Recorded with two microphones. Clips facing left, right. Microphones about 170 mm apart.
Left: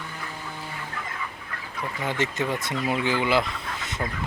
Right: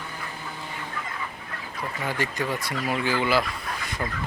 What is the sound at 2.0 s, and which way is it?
Speech, 20° left (ahead or behind).